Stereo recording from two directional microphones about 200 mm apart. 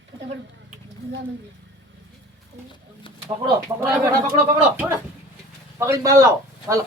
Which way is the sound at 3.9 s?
15° right (ahead or behind).